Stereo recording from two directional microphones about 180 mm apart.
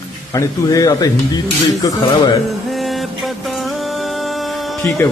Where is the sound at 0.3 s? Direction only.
20° left (ahead or behind).